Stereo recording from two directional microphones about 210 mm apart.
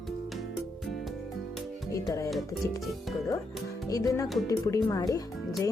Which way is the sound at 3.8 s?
15° left (ahead or behind).